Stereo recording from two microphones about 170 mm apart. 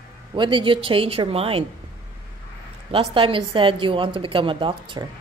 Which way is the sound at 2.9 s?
35° right (ahead or behind).